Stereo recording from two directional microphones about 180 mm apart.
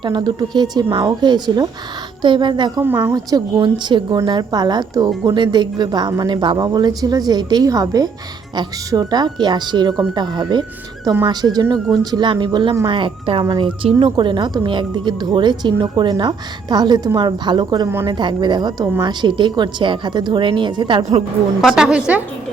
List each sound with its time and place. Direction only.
0.0 s a woman's voice: 25° right (ahead or behind)
2.8 s a woman's voice: 15° right (ahead or behind)
21.6 s a woman's voice: 5° right (ahead or behind)